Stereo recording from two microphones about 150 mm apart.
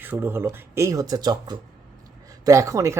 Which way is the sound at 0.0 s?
15° right (ahead or behind).